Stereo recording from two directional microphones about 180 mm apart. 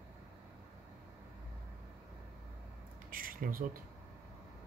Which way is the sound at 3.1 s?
50° right (ahead or behind).